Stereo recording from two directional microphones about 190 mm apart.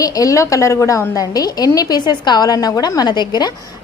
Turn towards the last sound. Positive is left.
turn(degrees=20)  # may be behind; listen again after turning